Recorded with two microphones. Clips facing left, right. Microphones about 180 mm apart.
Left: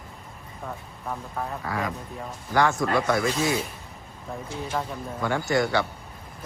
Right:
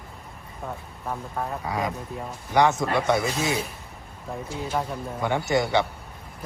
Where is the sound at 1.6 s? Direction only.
20° right (ahead or behind).